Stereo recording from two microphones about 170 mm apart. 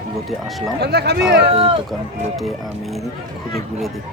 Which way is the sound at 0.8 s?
75° right (ahead or behind).